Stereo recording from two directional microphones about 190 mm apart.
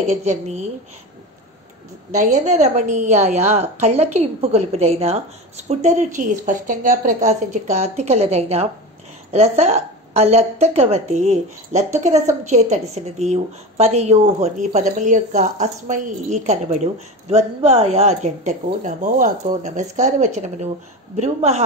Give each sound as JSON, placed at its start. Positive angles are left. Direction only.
{"t": 0.1, "sound": "a woman's voice", "side_deg": -40}
{"t": 2.1, "sound": "a woman's voice", "side_deg": -40}